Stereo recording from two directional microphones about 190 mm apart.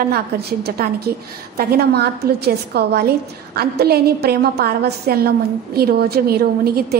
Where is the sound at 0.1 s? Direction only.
55° right (ahead or behind).